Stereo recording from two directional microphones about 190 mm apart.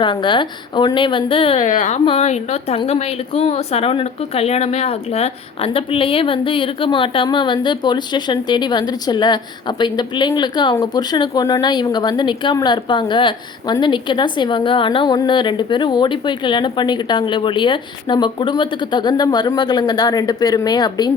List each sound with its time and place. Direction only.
0.0 s speech: 25° left (ahead or behind)
1.6 s speech: 40° left (ahead or behind); by 21.1 s 20° left (ahead or behind)